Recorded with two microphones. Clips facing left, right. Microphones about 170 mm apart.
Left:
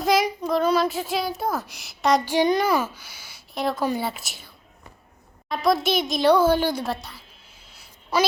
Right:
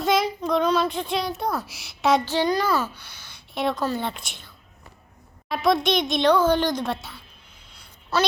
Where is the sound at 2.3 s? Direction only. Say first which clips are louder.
Left 2 dB; 15° left (ahead or behind).